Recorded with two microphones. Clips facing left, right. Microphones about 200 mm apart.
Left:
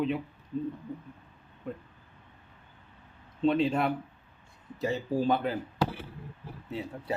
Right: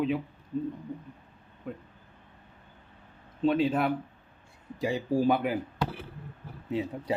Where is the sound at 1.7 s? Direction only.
5° right (ahead or behind).